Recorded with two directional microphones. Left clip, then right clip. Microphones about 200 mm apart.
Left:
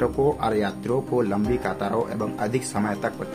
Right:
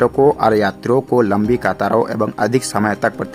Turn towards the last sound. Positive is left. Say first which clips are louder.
# right 9 dB
turn(degrees=-45)  # may be behind; listen again after turning